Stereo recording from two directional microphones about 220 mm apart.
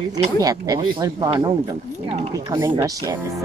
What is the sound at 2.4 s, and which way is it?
Speech, 15° right (ahead or behind).